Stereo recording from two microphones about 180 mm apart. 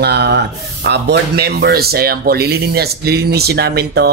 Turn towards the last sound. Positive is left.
turn(degrees=-65)  # may be behind; listen again after turning